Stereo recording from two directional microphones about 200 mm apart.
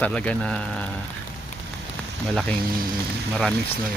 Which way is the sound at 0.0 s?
5° left (ahead or behind).